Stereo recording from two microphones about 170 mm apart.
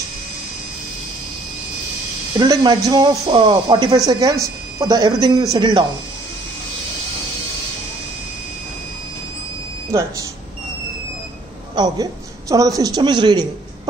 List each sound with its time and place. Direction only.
2.3 s speech: 25° right (ahead or behind)
11.7 s a woman's voice: 25° right (ahead or behind)